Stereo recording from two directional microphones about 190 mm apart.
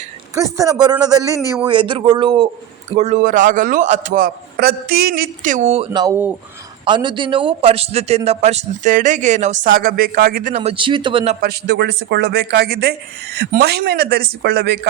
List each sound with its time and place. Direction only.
0.3 s a man's voice: 15° right (ahead or behind)
2.9 s a man's voice: 35° right (ahead or behind)
5.9 s a man's voice: 20° right (ahead or behind); by 9.6 s 40° right (ahead or behind)
9.7 s a man's voice: 50° right (ahead or behind)
10.5 s a man's voice: 35° right (ahead or behind)
11.3 s speech: 55° right (ahead or behind)